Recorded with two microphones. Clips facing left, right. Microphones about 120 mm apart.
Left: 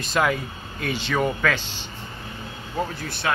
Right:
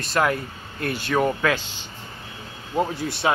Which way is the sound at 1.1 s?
5° right (ahead or behind).